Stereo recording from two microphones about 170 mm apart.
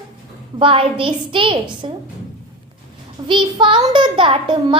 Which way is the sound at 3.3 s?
30° right (ahead or behind).